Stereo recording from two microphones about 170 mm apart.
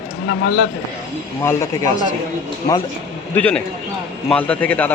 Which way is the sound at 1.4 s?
15° left (ahead or behind).